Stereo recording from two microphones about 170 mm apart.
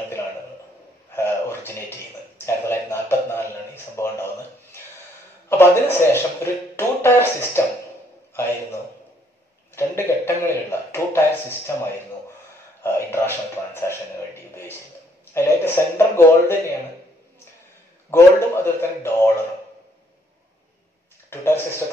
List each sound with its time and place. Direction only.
1.1 s a sound: 15° left (ahead or behind)
5.5 s speech: 15° left (ahead or behind)
9.8 s speech: 15° left (ahead or behind)
15.3 s speech: 15° left (ahead or behind)
18.1 s speech: 15° left (ahead or behind)
21.3 s speech: 15° left (ahead or behind)